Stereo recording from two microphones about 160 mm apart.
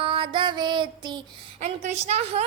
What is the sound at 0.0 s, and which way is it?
Music, 30° right (ahead or behind).